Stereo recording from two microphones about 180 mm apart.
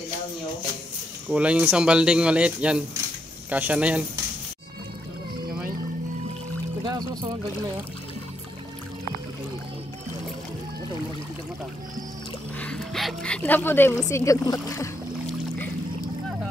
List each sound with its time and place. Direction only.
1.3 s speech: 5° right (ahead or behind)
6.8 s music: 20° right (ahead or behind)
12.5 s speech: 5° left (ahead or behind)